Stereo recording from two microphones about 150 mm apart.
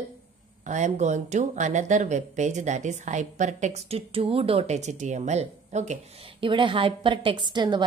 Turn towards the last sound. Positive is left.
turn(degrees=-30)  # may be behind; listen again after turning